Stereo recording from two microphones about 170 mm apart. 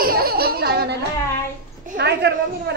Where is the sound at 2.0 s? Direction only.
80° right.